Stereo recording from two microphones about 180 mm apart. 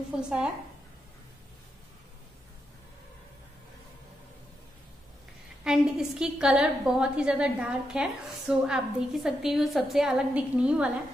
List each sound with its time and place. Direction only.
0.1 s a woman's voice: 5° right (ahead or behind)
5.6 s a woman's voice: 5° right (ahead or behind)